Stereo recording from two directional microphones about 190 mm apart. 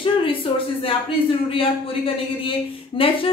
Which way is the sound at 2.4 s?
30° left (ahead or behind).